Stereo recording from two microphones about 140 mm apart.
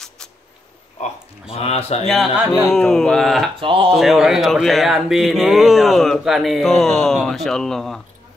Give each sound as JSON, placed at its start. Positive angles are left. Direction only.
{"t": 1.5, "sound": "speech", "side_deg": 45}
{"t": 2.0, "sound": "speech", "side_deg": 0}
{"t": 3.5, "sound": "speech", "side_deg": -40}
{"t": 3.9, "sound": "speech", "side_deg": 0}